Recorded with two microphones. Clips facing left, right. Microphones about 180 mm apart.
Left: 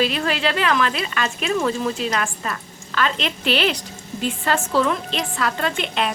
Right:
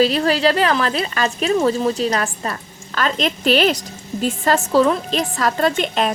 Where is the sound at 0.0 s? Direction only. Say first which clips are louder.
Right 6 dB; 35° right (ahead or behind).